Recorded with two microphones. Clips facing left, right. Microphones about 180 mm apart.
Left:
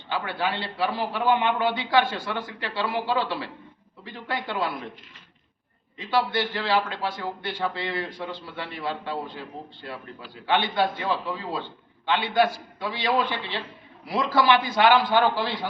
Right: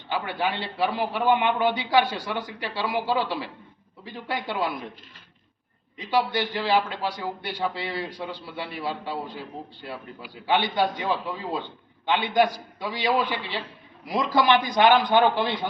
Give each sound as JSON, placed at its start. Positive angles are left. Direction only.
{"t": 0.1, "sound": "a man's voice", "side_deg": -15}
{"t": 6.0, "sound": "a man's voice", "side_deg": -10}